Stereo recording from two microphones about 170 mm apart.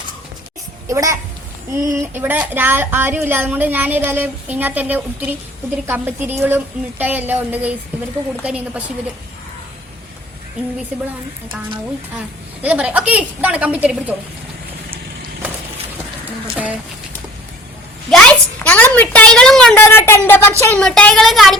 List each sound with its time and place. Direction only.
0.9 s speech: 20° right (ahead or behind)
12.6 s speech: 5° right (ahead or behind)
18.1 s a sound: 5° left (ahead or behind)
20.7 s speech: 5° left (ahead or behind)